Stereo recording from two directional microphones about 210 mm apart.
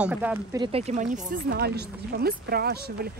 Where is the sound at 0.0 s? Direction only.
5° right (ahead or behind).